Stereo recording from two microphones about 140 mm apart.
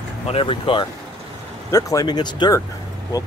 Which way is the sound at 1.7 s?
25° left (ahead or behind).